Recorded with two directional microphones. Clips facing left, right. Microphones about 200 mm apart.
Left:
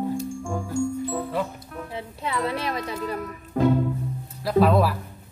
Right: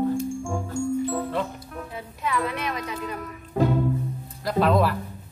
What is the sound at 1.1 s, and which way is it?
Music, 5° left (ahead or behind).